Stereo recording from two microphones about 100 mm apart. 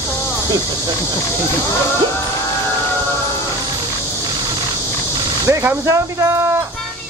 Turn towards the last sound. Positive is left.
turn(degrees=-30)  # may be behind; listen again after turning